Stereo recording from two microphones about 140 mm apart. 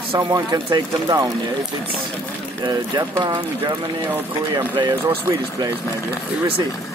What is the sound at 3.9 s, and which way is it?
Speech, 15° right (ahead or behind).